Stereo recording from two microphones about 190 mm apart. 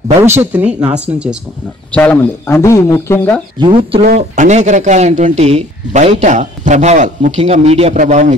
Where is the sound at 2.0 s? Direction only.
10° left (ahead or behind).